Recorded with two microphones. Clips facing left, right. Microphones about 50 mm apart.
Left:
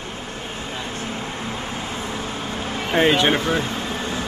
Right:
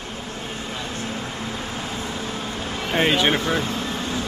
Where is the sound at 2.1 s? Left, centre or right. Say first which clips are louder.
Left 1 dB; left.